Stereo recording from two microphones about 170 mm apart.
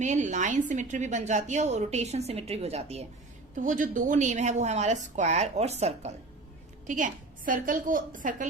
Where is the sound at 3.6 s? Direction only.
50° right (ahead or behind).